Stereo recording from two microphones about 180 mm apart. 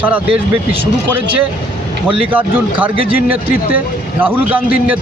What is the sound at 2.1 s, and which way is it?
Speech, 10° right (ahead or behind).